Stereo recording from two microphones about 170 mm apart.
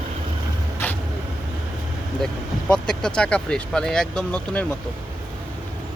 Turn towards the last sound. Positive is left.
turn(degrees=5)  # may be behind; listen again after turning